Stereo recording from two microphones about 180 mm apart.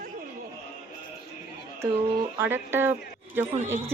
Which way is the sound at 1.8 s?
15° right (ahead or behind).